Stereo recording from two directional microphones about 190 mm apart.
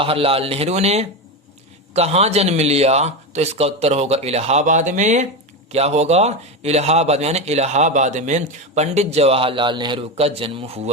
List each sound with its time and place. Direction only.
0.0 s speech: 30° right (ahead or behind)